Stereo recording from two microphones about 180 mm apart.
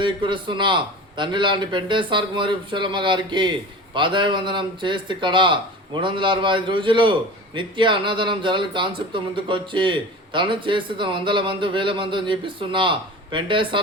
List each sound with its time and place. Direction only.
0.0 s speech: 25° right (ahead or behind)